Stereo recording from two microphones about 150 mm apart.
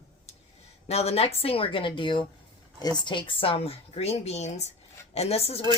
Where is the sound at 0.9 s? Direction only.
45° left (ahead or behind).